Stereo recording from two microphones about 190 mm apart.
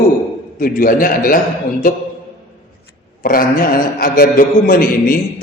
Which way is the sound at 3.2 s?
50° left (ahead or behind).